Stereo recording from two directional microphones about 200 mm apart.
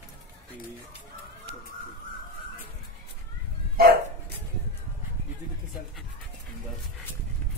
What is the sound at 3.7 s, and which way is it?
Dog, 50° right (ahead or behind).